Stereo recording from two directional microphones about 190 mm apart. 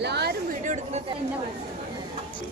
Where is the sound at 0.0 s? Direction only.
60° right (ahead or behind).